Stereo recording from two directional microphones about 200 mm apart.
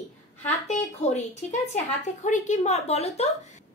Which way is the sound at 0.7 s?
35° left (ahead or behind).